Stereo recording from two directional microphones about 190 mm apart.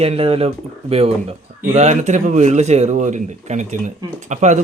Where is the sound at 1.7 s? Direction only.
35° right (ahead or behind).